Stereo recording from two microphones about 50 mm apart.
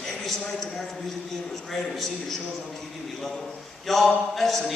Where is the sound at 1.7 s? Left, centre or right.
Centre.